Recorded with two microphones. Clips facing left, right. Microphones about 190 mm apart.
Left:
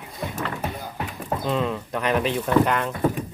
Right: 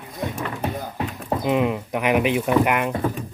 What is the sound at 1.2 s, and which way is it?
Speech, 15° right (ahead or behind).